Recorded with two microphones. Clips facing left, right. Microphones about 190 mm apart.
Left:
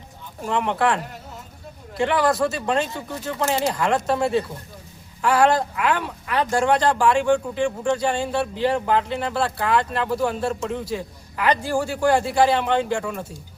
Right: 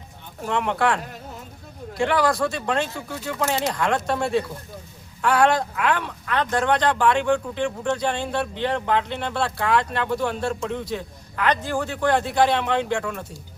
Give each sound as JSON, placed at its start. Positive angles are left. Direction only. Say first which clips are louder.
{"t": 0.4, "sound": "speech", "louder": "left 1 dB", "side_deg": 0}